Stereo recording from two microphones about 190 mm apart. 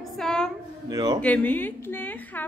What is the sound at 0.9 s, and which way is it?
Speech, 20° right (ahead or behind).